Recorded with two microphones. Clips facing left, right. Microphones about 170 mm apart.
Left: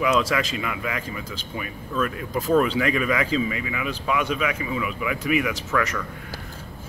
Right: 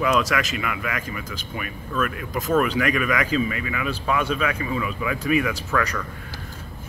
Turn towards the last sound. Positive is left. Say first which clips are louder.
# even
turn(degrees=20)  # may be behind; listen again after turning